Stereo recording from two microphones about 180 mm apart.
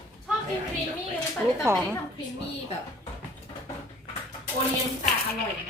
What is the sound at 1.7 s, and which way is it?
Speech, 15° right (ahead or behind).